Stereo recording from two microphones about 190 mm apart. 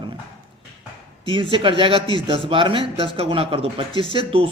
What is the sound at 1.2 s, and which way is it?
Speech, 25° right (ahead or behind).